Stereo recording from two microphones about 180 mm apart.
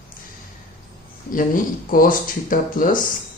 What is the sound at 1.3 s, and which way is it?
Speech, 50° left (ahead or behind).